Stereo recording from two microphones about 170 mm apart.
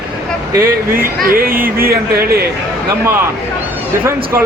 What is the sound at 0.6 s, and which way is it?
Speech, 55° right (ahead or behind).